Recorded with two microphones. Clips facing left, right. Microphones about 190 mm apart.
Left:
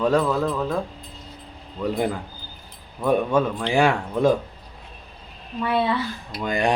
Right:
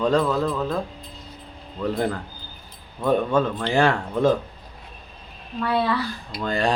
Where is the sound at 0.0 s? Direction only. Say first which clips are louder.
Even; 10° left (ahead or behind).